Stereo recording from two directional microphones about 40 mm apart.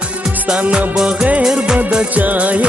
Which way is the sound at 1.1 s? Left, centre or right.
Right.